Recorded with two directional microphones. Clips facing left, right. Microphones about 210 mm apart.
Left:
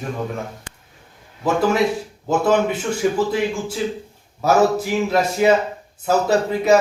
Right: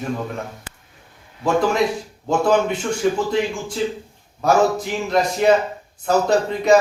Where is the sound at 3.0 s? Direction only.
5° left (ahead or behind).